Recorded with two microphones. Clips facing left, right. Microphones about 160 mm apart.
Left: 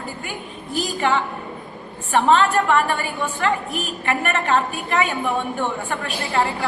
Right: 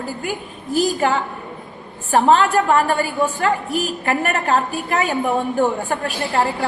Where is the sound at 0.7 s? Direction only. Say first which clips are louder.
Right 3 dB; 40° right (ahead or behind).